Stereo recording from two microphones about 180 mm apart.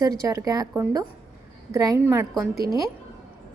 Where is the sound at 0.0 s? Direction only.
20° right (ahead or behind).